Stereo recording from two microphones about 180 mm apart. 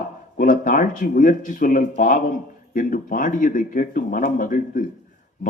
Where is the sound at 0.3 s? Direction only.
50° left (ahead or behind).